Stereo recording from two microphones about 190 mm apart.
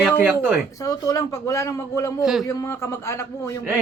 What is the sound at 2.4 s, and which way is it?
A man's voice, 15° left (ahead or behind).